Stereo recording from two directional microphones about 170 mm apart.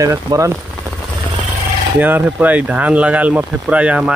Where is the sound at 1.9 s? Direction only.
10° right (ahead or behind).